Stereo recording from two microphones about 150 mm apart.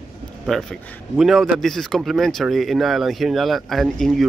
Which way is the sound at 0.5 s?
Centre (ahead or behind).